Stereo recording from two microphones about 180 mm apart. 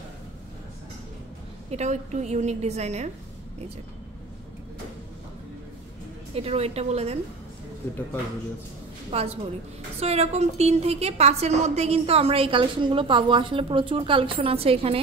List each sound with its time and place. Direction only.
1.7 s a woman's voice: 40° right (ahead or behind)
6.3 s a woman's voice: 35° right (ahead or behind)
9.9 s a woman's voice: 35° right (ahead or behind)